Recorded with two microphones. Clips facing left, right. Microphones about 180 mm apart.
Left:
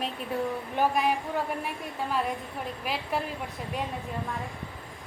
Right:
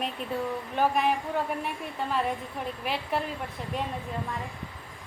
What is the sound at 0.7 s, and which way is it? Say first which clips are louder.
A woman's voice: right 1 dB; 5° left (ahead or behind).